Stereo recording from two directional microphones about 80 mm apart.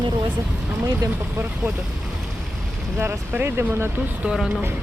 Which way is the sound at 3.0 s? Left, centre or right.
Right.